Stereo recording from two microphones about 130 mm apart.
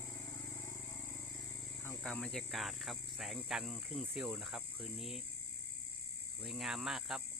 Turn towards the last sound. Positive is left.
turn(degrees=-5)  # may be behind; listen again after turning